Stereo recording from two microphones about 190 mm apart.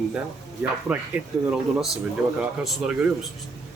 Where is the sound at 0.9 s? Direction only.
5° right (ahead or behind).